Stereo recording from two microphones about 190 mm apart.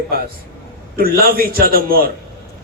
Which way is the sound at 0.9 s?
50° right (ahead or behind).